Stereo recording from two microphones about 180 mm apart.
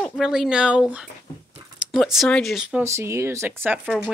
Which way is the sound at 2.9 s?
15° right (ahead or behind).